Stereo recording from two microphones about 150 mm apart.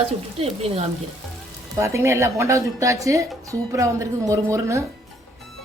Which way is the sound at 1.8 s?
20° right (ahead or behind).